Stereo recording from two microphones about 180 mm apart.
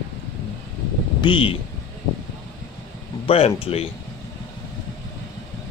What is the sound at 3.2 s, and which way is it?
Speech, 35° left (ahead or behind).